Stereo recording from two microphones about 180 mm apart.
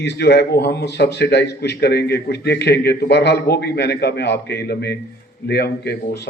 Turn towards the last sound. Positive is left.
turn(degrees=65)  # may be behind; listen again after turning